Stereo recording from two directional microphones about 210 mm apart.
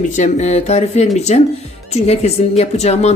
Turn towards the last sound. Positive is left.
turn(degrees=30)  # may be behind; listen again after turning